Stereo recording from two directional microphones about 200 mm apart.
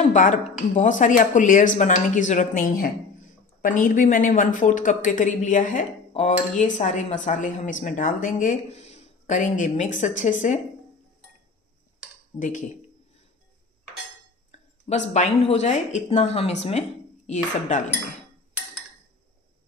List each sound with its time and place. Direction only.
0.0 s speech: 40° left (ahead or behind)
12.4 s speech: 40° left (ahead or behind)
14.5 s a sound: 35° left (ahead or behind)
14.9 s speech: 35° left (ahead or behind)